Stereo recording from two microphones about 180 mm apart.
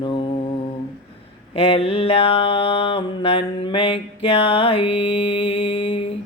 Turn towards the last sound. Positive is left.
turn(degrees=30)  # may be behind; listen again after turning